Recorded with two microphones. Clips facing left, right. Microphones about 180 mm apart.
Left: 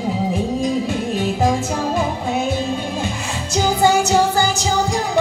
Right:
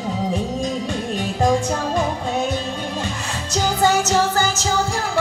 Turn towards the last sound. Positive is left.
turn(degrees=15)  # may be behind; listen again after turning